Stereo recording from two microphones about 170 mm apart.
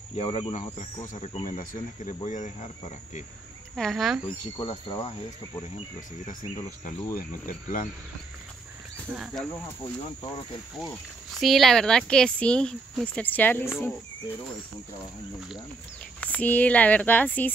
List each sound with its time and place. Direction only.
0.2 s speech: 35° left (ahead or behind)
3.7 s speech: centre (ahead or behind)
4.6 s speech: 25° left (ahead or behind)
7.2 s speech: 55° left (ahead or behind)
9.1 s speech: centre (ahead or behind)
11.3 s speech: centre (ahead or behind)
16.2 s speech: 10° left (ahead or behind)